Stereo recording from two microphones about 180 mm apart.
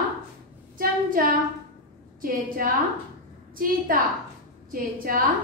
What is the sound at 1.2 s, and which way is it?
A woman's voice, 55° right (ahead or behind).